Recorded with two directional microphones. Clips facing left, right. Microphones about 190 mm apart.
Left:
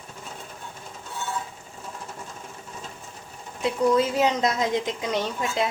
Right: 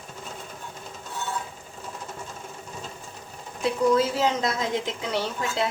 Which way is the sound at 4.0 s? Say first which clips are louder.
Left 2 dB; 20° left (ahead or behind).